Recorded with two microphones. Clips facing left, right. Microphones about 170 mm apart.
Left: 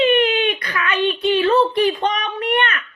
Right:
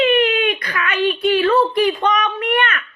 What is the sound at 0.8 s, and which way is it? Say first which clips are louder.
Speech: right 1 dB; 25° left (ahead or behind).